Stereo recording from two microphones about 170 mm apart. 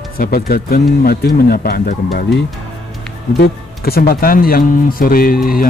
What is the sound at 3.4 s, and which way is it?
Speech, 65° left (ahead or behind).